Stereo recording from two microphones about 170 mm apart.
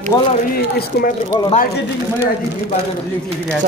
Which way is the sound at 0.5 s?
65° left (ahead or behind).